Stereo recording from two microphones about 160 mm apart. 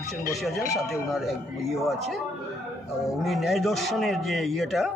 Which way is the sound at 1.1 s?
Centre (ahead or behind).